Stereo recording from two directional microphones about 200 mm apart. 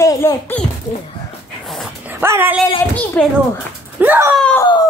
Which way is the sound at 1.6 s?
Centre (ahead or behind).